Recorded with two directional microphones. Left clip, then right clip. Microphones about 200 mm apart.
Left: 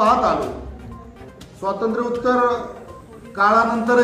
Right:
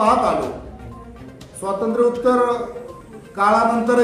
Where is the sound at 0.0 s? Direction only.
Centre (ahead or behind).